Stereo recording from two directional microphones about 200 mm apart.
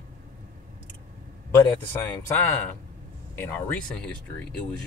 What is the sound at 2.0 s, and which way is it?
Speech, 10° left (ahead or behind).